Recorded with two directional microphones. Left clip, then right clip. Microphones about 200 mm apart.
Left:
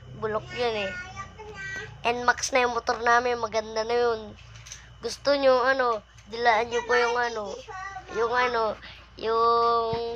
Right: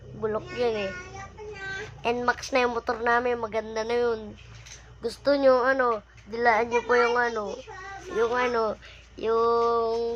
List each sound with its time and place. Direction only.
0.2 s a woman's voice: centre (ahead or behind)
2.0 s a woman's voice: 5° right (ahead or behind)
8.1 s a sound: 5° right (ahead or behind)